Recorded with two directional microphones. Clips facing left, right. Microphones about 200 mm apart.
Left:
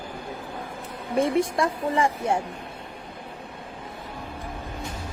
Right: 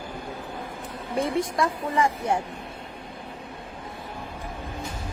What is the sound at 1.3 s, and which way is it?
A woman's voice, 25° left (ahead or behind).